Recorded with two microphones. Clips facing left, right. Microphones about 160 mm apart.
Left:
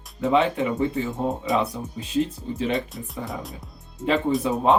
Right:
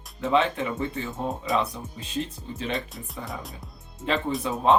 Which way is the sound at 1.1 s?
20° left (ahead or behind).